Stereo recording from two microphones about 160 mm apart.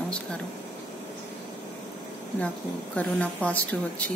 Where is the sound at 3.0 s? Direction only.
10° left (ahead or behind).